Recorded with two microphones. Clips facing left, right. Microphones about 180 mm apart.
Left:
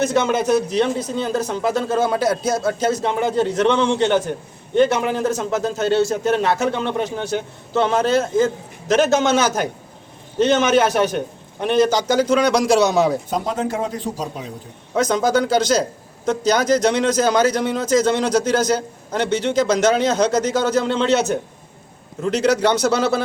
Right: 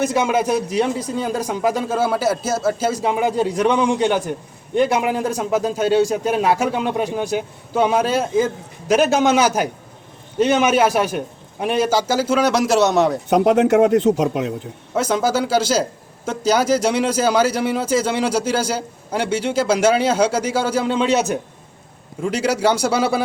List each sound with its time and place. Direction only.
0.0 s a man's voice: 10° right (ahead or behind)
13.3 s speech: 70° right (ahead or behind)
14.9 s speech: 5° right (ahead or behind)